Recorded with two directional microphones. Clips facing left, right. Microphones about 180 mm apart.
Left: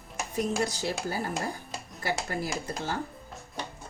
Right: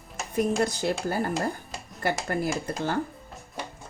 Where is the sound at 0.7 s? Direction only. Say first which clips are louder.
Right 4 dB; 55° right (ahead or behind).